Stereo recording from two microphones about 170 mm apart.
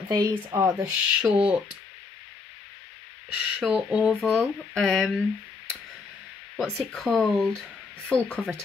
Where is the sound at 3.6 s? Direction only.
5° right (ahead or behind).